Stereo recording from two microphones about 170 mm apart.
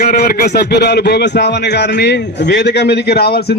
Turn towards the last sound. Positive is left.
turn(degrees=70)  # may be behind; listen again after turning